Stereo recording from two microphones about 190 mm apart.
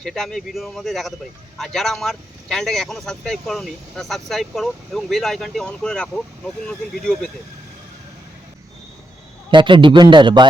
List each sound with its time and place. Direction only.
0.0 s speech: centre (ahead or behind)
9.5 s a man's voice: 25° right (ahead or behind)